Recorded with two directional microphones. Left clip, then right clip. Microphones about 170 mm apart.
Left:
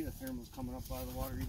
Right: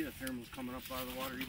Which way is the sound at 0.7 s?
45° left (ahead or behind).